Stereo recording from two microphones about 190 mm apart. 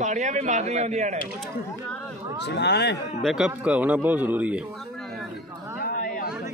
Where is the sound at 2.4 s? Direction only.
60° left (ahead or behind).